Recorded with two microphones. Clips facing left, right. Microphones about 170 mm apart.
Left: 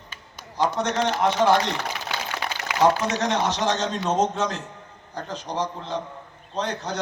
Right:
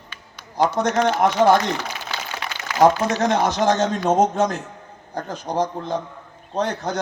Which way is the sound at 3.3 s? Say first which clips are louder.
Right 5 dB; 55° right (ahead or behind).